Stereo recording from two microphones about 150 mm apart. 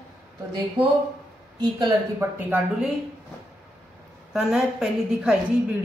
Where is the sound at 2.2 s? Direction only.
15° right (ahead or behind).